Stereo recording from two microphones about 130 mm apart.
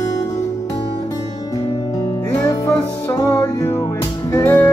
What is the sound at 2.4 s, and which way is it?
Music, 25° left (ahead or behind).